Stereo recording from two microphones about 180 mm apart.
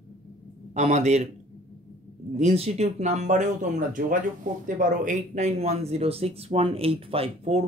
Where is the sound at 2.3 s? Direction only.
35° right (ahead or behind).